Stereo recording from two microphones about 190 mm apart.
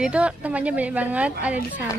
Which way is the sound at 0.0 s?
5° right (ahead or behind).